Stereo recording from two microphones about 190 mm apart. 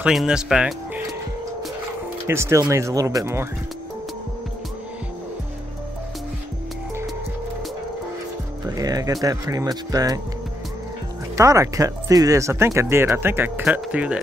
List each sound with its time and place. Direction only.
0.0 s speech: 5° right (ahead or behind)
2.2 s speech: 15° right (ahead or behind)
8.6 s speech: 20° right (ahead or behind)
11.3 s speech: 15° right (ahead or behind)